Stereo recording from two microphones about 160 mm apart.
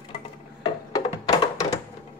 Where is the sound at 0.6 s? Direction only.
25° left (ahead or behind).